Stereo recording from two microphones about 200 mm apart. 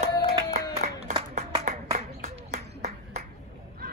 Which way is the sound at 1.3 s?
35° right (ahead or behind).